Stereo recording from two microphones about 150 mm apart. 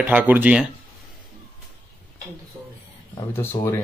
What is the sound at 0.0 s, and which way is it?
Speech, 10° right (ahead or behind).